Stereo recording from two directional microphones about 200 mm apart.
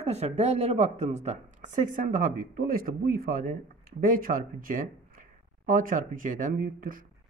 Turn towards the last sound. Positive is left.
turn(degrees=-45)  # may be behind; listen again after turning